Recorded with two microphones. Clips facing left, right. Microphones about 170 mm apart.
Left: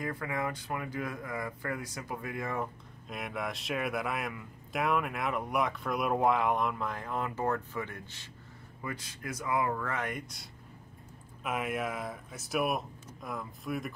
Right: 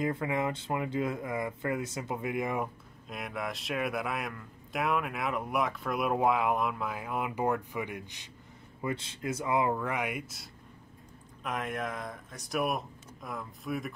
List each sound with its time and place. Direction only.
0.0 s speech: 20° right (ahead or behind)
3.1 s a man's voice: centre (ahead or behind); by 8.3 s 15° right (ahead or behind)
8.8 s a man's voice: 25° right (ahead or behind); by 13.9 s centre (ahead or behind)